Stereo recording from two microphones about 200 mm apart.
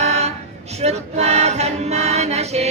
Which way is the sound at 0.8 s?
35° right (ahead or behind).